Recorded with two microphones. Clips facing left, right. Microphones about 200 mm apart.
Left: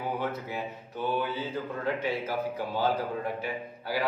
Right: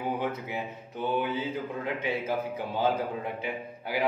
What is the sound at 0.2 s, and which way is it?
A man's voice, 20° right (ahead or behind).